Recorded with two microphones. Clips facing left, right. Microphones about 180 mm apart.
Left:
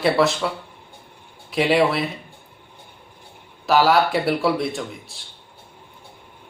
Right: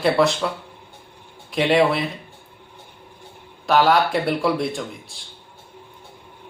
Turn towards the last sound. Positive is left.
turn(degrees=0)  # may be behind; listen again after turning